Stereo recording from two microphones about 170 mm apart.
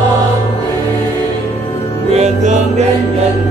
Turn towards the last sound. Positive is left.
turn(degrees=-45)  # may be behind; listen again after turning